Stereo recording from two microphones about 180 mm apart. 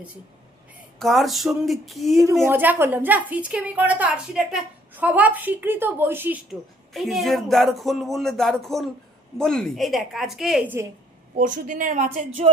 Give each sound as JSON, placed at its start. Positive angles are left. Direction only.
{"t": 0.9, "sound": "a woman's voice", "side_deg": 0}
{"t": 2.5, "sound": "a woman's voice", "side_deg": -10}
{"t": 11.3, "sound": "a woman's voice", "side_deg": -45}